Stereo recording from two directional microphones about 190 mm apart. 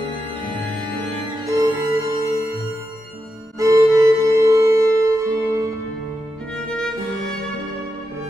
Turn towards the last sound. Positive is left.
turn(degrees=5)  # may be behind; listen again after turning